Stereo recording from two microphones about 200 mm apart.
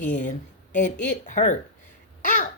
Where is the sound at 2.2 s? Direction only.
40° left (ahead or behind).